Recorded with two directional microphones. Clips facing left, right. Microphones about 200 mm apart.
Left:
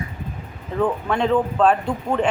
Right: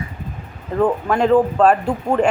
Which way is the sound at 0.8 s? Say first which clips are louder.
Right 4 dB; 40° right (ahead or behind).